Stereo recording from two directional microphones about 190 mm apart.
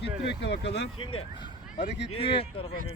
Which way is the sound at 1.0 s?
30° left (ahead or behind).